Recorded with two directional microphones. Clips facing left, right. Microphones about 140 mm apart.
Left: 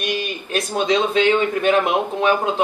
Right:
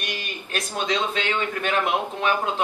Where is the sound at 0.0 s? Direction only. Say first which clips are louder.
Left 9 dB; 15° left (ahead or behind).